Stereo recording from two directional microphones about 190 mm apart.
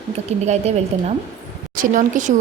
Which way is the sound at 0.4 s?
35° right (ahead or behind).